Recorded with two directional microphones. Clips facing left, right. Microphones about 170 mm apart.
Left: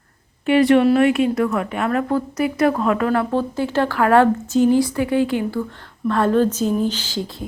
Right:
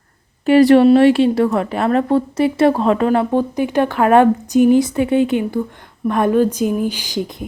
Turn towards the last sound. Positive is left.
turn(degrees=-15)  # may be behind; listen again after turning